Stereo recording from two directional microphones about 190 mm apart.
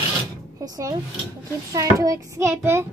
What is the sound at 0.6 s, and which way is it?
Child singing, 15° right (ahead or behind).